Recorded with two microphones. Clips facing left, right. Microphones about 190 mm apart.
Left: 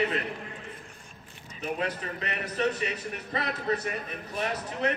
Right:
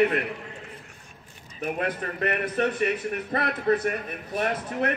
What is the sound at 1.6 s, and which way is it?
A man's voice, 55° right (ahead or behind).